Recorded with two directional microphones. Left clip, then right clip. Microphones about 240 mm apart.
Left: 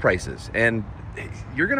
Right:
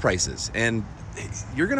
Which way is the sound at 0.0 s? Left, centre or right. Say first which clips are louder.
Left 2 dB; centre.